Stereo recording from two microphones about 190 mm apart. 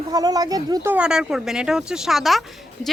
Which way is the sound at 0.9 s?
5° right (ahead or behind).